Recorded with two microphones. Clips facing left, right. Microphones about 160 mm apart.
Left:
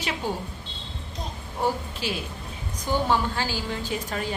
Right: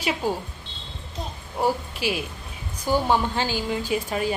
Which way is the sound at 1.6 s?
10° right (ahead or behind).